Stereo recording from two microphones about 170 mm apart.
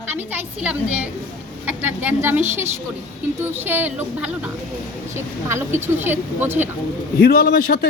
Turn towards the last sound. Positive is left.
turn(degrees=65)  # may be behind; listen again after turning